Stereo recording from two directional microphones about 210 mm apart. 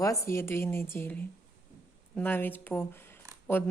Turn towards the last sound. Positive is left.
turn(degrees=10)  # may be behind; listen again after turning